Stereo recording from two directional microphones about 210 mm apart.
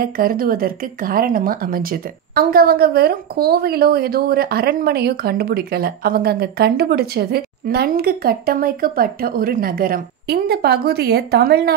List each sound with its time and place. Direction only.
0.0 s speech: 45° right (ahead or behind)